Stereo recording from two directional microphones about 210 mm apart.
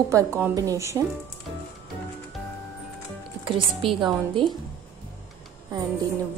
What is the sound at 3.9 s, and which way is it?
Speech, 20° right (ahead or behind).